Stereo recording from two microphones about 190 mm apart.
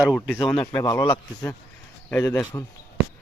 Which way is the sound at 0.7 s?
15° left (ahead or behind).